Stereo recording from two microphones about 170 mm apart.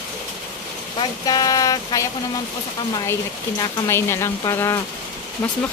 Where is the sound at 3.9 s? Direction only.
15° left (ahead or behind).